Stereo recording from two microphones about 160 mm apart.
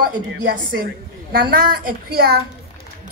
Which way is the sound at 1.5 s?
70° right (ahead or behind).